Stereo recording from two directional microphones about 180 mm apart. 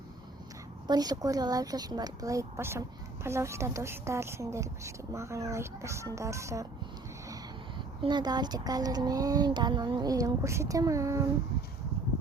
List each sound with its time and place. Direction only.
0.9 s a woman's voice: 20° right (ahead or behind)
8.0 s speech: 25° right (ahead or behind)